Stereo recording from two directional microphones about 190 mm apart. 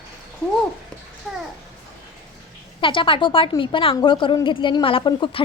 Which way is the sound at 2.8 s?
25° left (ahead or behind).